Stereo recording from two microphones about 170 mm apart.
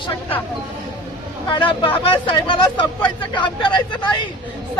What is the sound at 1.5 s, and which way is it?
Speech, 30° left (ahead or behind).